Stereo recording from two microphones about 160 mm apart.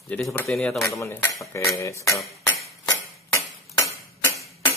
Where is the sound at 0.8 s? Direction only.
20° left (ahead or behind).